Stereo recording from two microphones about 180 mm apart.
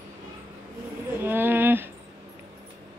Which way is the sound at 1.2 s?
10° right (ahead or behind).